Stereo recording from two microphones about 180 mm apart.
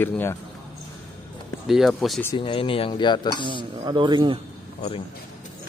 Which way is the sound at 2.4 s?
30° left (ahead or behind).